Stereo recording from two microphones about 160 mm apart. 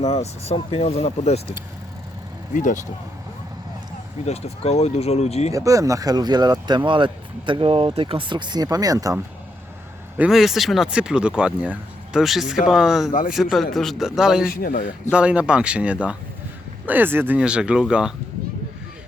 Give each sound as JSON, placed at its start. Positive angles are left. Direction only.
{"t": 0.0, "sound": "speech", "side_deg": 40}
{"t": 2.5, "sound": "speech", "side_deg": 50}
{"t": 4.3, "sound": "speech", "side_deg": 40}
{"t": 5.5, "sound": "speech", "side_deg": -20}
{"t": 10.2, "sound": "speech", "side_deg": -5}
{"t": 14.4, "sound": "speech", "side_deg": 70}
{"t": 15.1, "sound": "speech", "side_deg": -5}